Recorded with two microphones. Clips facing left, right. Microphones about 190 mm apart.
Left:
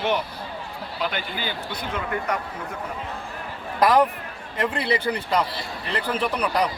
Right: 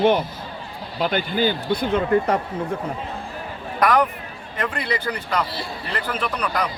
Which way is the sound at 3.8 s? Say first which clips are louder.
Left 1 dB; 25° left (ahead or behind).